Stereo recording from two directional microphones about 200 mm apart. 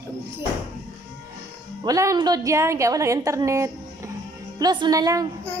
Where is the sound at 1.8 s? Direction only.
15° right (ahead or behind).